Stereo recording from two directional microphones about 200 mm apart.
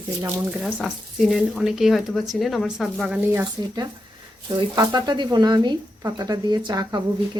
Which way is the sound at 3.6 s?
20° right (ahead or behind).